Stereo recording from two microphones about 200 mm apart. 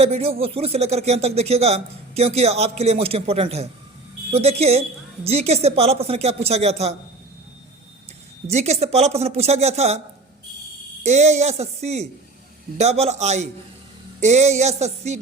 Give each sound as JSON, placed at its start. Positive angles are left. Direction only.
{"t": 0.0, "sound": "a man's voice", "side_deg": -30}
{"t": 8.5, "sound": "a man's voice", "side_deg": -35}
{"t": 11.0, "sound": "a man's voice", "side_deg": -35}